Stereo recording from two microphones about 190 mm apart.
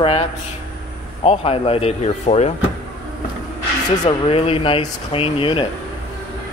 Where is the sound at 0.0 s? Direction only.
30° left (ahead or behind).